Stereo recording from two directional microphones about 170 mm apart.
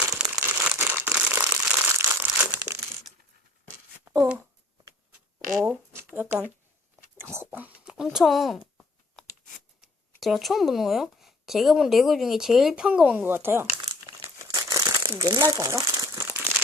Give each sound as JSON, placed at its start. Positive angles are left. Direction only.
{"t": 0.0, "sound": "crumpling", "side_deg": -5}
{"t": 4.0, "sound": "a sound", "side_deg": -15}
{"t": 5.5, "sound": "speech", "side_deg": -5}
{"t": 7.2, "sound": "whispering", "side_deg": -15}
{"t": 10.2, "sound": "speech", "side_deg": 0}
{"t": 14.4, "sound": "crumpling", "side_deg": -25}
{"t": 15.2, "sound": "speech", "side_deg": -25}
{"t": 16.0, "sound": "crumpling", "side_deg": -15}